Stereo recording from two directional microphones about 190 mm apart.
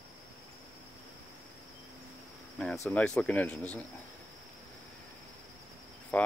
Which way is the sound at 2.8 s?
5° left (ahead or behind).